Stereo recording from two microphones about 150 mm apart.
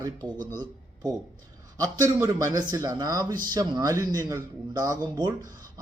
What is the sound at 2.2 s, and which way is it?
Speech, 25° right (ahead or behind).